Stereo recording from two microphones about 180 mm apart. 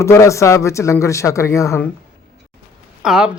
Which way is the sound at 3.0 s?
5° right (ahead or behind).